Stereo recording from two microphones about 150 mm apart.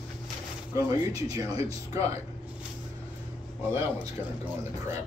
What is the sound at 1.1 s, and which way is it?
Speech, 25° right (ahead or behind).